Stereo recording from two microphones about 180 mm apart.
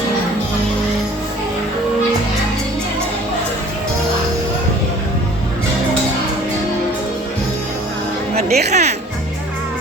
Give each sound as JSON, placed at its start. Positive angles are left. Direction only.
{"t": 8.4, "sound": "speech", "side_deg": -35}